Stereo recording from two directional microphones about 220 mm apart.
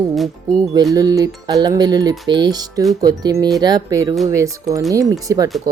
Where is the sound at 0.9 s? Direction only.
15° right (ahead or behind).